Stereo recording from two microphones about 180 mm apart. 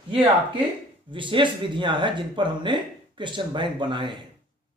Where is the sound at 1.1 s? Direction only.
30° right (ahead or behind).